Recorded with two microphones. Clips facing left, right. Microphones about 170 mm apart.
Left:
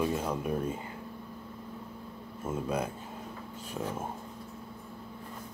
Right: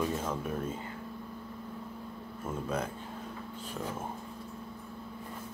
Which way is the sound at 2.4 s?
10° left (ahead or behind).